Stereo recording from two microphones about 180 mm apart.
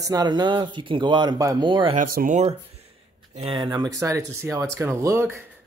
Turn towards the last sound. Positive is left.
turn(degrees=-15)  # may be behind; listen again after turning